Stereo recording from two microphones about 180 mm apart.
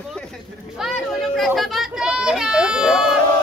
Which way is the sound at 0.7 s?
Centre (ahead or behind).